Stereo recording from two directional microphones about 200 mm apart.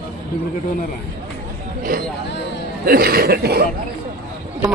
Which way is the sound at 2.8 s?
50° right (ahead or behind).